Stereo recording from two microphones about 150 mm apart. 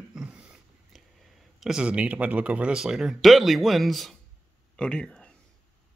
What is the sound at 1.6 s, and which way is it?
Speech, 5° right (ahead or behind).